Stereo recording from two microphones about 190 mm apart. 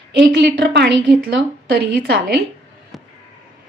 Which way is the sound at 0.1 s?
65° right (ahead or behind).